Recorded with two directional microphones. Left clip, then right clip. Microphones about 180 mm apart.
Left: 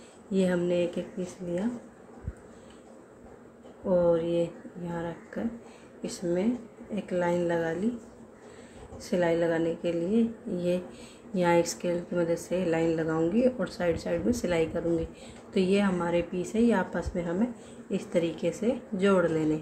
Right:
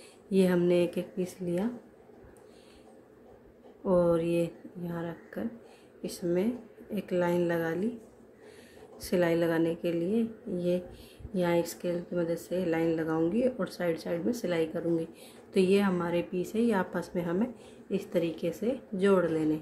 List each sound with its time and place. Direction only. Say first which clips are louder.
0.3 s speech: right 1 dB; 20° right (ahead or behind)
3.8 s a woman's voice: left 1 dB; 20° right (ahead or behind)
8.9 s a woman's voice: left 1 dB; 15° right (ahead or behind)